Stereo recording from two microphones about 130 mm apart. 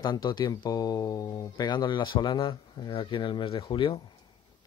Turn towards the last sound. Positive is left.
turn(degrees=40)  # may be behind; listen again after turning